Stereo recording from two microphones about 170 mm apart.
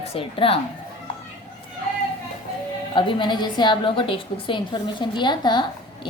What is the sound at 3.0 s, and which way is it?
A woman's voice, 30° left (ahead or behind).